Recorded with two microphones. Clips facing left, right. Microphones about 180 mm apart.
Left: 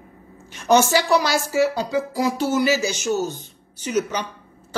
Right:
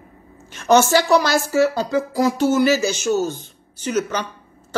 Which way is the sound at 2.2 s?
45° right (ahead or behind).